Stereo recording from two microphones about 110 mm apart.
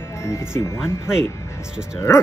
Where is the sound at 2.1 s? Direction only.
25° left (ahead or behind).